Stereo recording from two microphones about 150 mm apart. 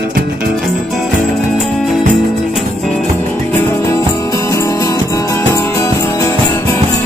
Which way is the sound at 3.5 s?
15° left (ahead or behind).